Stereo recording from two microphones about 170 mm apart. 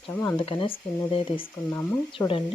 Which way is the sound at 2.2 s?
10° left (ahead or behind).